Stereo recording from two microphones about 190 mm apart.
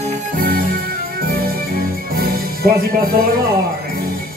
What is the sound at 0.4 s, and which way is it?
Music, 50° right (ahead or behind).